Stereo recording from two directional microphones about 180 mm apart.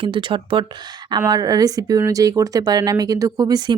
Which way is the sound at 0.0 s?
30° right (ahead or behind).